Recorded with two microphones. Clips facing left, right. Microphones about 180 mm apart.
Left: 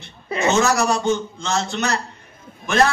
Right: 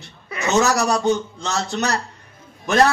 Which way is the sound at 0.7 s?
40° right (ahead or behind).